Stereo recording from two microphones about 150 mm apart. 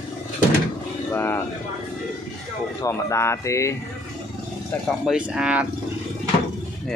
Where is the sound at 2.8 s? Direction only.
20° left (ahead or behind).